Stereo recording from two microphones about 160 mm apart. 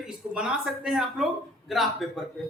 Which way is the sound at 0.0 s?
5° right (ahead or behind).